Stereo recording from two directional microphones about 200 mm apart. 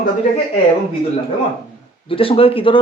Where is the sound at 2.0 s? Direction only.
25° left (ahead or behind).